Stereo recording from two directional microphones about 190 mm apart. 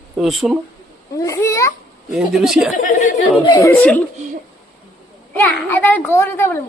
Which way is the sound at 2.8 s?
45° left (ahead or behind).